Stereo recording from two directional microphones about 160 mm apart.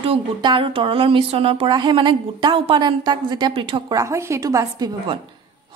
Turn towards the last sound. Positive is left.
turn(degrees=-25)  # may be behind; listen again after turning